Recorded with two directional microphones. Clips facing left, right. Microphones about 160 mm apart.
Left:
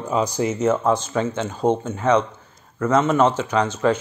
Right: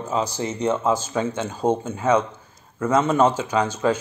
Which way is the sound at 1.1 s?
15° right (ahead or behind).